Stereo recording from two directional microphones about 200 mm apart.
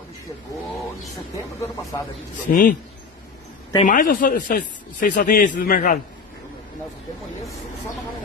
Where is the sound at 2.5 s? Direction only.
40° left (ahead or behind).